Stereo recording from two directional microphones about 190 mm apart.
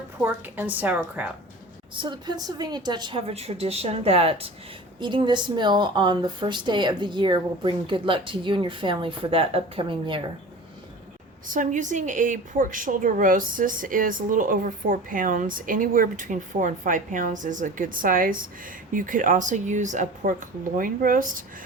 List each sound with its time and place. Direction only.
0.2 s a woman's voice: 10° right (ahead or behind)
2.0 s a woman's voice: 25° right (ahead or behind)
11.4 s a woman's voice: 45° right (ahead or behind)